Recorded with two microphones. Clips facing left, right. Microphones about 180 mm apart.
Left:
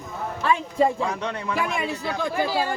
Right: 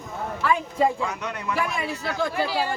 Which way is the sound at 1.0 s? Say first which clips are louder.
Left 3 dB; 30° left (ahead or behind).